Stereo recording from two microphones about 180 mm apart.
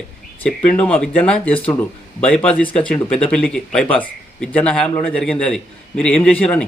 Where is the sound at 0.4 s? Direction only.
5° left (ahead or behind).